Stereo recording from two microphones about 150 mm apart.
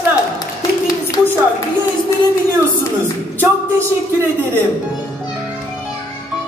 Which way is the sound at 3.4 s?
15° right (ahead or behind).